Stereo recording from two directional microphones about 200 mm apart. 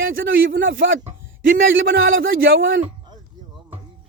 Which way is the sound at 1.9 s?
75° right (ahead or behind).